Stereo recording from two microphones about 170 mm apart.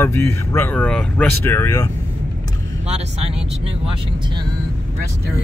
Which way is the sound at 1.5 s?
15° left (ahead or behind).